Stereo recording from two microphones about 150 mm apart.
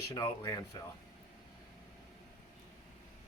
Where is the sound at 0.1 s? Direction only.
25° left (ahead or behind).